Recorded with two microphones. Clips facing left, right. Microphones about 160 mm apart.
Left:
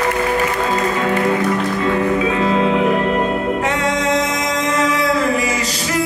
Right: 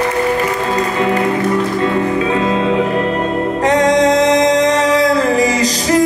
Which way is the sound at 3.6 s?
35° right (ahead or behind).